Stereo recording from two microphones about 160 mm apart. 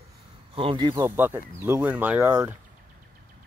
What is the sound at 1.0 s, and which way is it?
Speech, 15° right (ahead or behind).